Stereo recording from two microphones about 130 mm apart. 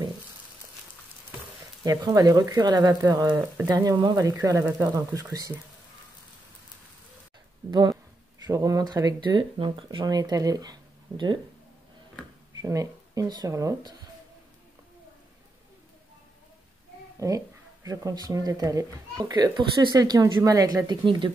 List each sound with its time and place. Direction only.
1.9 s a child's voice: 30° right (ahead or behind)
7.7 s speech: 35° right (ahead or behind)
12.5 s speech: 25° right (ahead or behind)
17.2 s a child's voice: 25° right (ahead or behind)